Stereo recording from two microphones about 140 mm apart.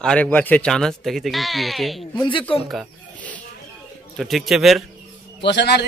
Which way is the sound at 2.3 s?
40° left (ahead or behind).